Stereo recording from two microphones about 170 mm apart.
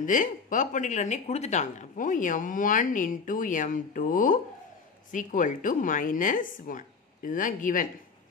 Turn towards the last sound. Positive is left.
turn(degrees=50)  # may be behind; listen again after turning